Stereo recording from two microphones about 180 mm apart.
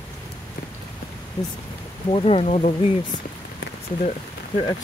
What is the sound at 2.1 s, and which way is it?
Speech, 35° left (ahead or behind).